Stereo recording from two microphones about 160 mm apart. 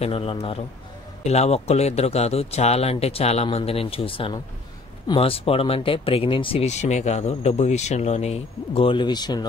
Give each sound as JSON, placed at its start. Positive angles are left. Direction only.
{"t": 0.0, "sound": "speech", "side_deg": 35}